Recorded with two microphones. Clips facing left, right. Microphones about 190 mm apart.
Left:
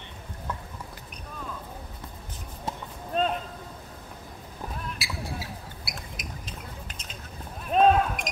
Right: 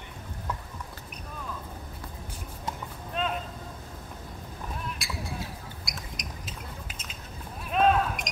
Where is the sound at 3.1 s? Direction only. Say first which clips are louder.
Left 5 dB; 40° left (ahead or behind).